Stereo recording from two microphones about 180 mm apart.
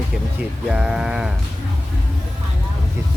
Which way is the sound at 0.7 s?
5° right (ahead or behind).